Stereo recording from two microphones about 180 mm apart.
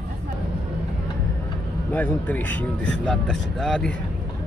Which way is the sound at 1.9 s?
10° left (ahead or behind).